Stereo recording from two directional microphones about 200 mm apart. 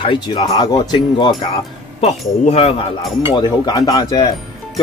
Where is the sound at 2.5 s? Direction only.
30° left (ahead or behind).